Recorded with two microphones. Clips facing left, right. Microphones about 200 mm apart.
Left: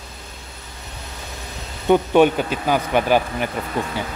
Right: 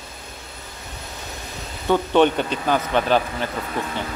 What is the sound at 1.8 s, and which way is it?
A man's voice, 15° left (ahead or behind).